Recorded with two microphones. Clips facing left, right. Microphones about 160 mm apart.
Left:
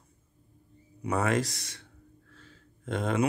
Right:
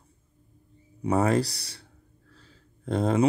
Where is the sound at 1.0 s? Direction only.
30° right (ahead or behind).